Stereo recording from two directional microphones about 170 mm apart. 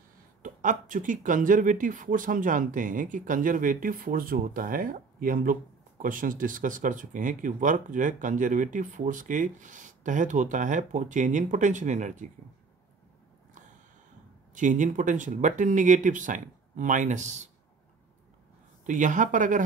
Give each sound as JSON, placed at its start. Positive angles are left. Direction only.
{"t": 0.4, "sound": "speech", "side_deg": -50}
{"t": 14.5, "sound": "speech", "side_deg": -50}
{"t": 18.9, "sound": "speech", "side_deg": -50}